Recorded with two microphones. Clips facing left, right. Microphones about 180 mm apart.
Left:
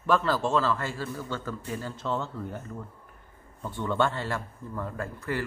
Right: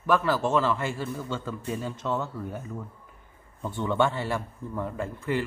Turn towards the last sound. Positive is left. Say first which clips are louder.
# right 3 dB
turn(degrees=-15)  # may be behind; listen again after turning